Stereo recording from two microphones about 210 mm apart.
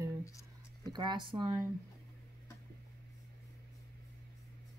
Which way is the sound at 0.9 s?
20° right (ahead or behind).